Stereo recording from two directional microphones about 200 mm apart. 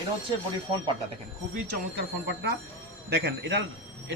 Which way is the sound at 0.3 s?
25° right (ahead or behind).